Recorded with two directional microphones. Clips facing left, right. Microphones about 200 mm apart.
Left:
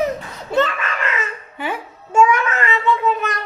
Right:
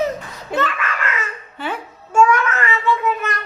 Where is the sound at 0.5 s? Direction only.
25° left (ahead or behind).